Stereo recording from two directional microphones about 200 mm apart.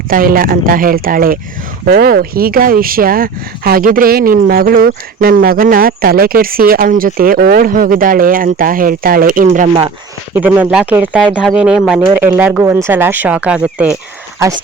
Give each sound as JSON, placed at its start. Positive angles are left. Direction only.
{"t": 0.1, "sound": "speech", "side_deg": -45}
{"t": 10.3, "sound": "speech", "side_deg": -10}